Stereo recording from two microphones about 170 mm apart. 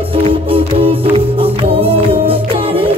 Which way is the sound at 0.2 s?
35° right (ahead or behind).